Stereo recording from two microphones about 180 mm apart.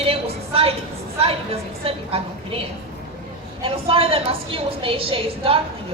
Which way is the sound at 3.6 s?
30° right (ahead or behind).